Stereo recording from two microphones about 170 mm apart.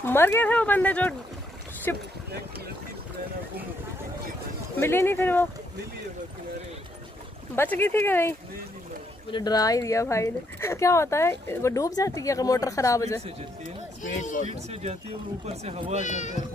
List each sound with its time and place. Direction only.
0.0 s speech: 15° left (ahead or behind)
4.7 s speech: 15° left (ahead or behind)
7.5 s speech: 10° left (ahead or behind)
9.3 s speech: 25° left (ahead or behind)
14.0 s speech: 50° left (ahead or behind)
14.5 s speech: 40° right (ahead or behind)
16.0 s speech: 45° left (ahead or behind)